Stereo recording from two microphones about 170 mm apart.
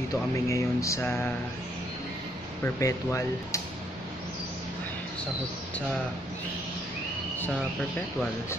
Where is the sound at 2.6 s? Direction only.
20° left (ahead or behind).